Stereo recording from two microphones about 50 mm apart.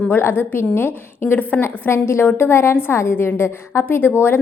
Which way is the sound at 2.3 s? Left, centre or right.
Left.